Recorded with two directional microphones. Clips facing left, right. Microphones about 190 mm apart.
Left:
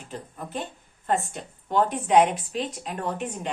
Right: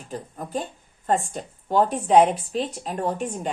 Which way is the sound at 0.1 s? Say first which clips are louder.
Right 5 dB; 40° right (ahead or behind).